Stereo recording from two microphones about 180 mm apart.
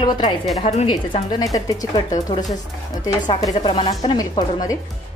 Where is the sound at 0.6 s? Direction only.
35° left (ahead or behind).